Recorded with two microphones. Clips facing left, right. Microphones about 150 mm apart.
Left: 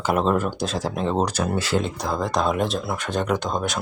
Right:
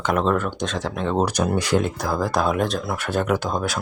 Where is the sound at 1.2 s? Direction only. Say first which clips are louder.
Right 2 dB; 15° right (ahead or behind).